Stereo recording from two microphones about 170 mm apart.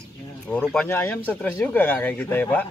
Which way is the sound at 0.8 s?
10° left (ahead or behind).